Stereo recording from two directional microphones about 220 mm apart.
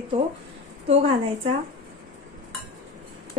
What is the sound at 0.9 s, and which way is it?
Speech, 25° right (ahead or behind).